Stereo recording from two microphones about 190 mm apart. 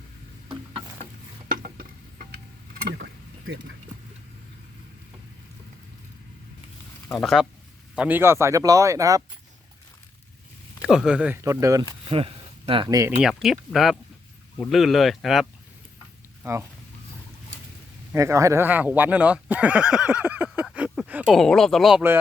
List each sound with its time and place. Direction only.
1.5 s a sound: 50° right (ahead or behind); by 3.8 s 70° right (ahead or behind)
7.1 s speech: centre (ahead or behind); by 9.2 s 15° right (ahead or behind)
10.8 s speech: 5° right (ahead or behind)
12.0 s speech: 30° right (ahead or behind)
13.1 s speech: centre (ahead or behind)
16.4 s speech: 15° right (ahead or behind)
18.1 s speech: 15° right (ahead or behind)
20.7 s a sound: 5° right (ahead or behind)
21.3 s speech: centre (ahead or behind)